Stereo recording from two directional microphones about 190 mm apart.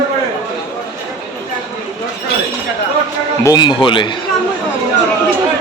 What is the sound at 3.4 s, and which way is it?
Speech, 20° left (ahead or behind).